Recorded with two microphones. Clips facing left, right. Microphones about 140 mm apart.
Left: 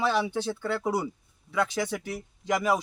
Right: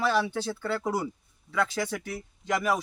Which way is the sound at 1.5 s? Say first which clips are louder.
Left 1 dB; 15° left (ahead or behind).